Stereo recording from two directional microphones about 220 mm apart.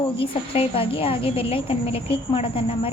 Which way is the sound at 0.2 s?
25° left (ahead or behind).